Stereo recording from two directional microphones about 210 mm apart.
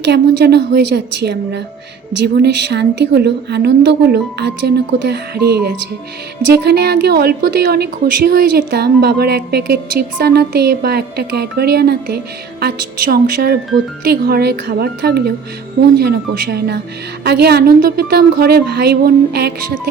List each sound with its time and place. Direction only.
0.0 s a woman's voice: 55° right (ahead or behind)